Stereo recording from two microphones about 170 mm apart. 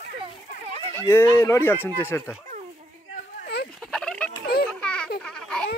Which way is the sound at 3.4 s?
70° left (ahead or behind).